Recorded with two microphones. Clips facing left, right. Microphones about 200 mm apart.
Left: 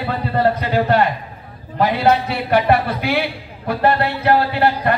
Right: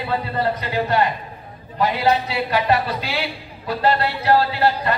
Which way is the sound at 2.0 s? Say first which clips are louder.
Left 3 dB; 55° left (ahead or behind).